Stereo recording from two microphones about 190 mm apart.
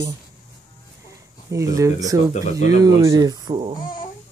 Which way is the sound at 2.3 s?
35° left (ahead or behind).